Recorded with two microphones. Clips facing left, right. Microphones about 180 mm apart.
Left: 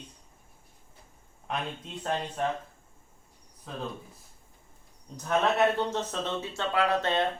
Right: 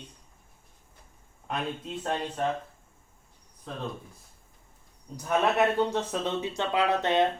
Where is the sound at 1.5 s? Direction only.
Centre (ahead or behind).